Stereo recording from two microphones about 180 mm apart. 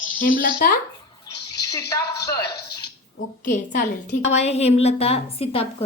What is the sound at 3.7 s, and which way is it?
A woman's voice, 40° left (ahead or behind).